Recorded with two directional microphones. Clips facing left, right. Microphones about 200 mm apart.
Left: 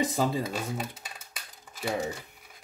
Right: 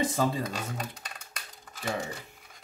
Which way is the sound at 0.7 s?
5° left (ahead or behind).